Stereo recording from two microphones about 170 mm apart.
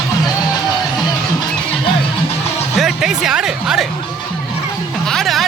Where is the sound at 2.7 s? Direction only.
Centre (ahead or behind).